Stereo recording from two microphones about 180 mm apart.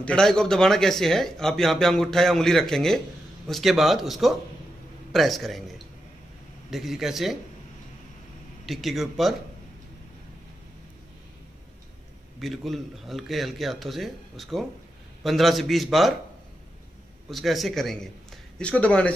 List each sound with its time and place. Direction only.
0.0 s speech: 5° left (ahead or behind)
6.7 s speech: centre (ahead or behind)
8.6 s speech: centre (ahead or behind)
12.4 s speech: centre (ahead or behind)
17.3 s a man's voice: centre (ahead or behind)